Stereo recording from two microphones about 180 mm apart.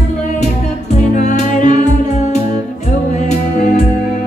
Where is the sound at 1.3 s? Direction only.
45° left (ahead or behind).